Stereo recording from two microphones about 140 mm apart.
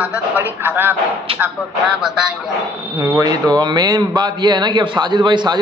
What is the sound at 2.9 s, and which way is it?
A man's voice, 25° right (ahead or behind).